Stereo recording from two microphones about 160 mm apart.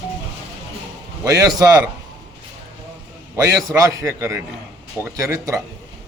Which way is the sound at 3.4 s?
20° right (ahead or behind).